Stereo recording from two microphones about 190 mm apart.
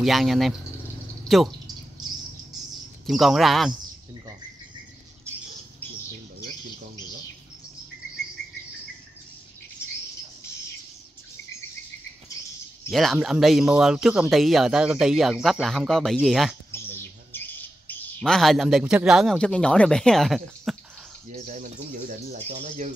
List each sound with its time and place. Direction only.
0.0 s speech: centre (ahead or behind)
3.1 s speech: centre (ahead or behind)
12.9 s speech: centre (ahead or behind)
16.9 s speech: 10° left (ahead or behind)
21.3 s speech: 40° right (ahead or behind)